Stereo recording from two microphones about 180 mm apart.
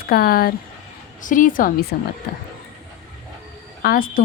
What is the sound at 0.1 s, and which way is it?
A woman's voice, 55° left (ahead or behind).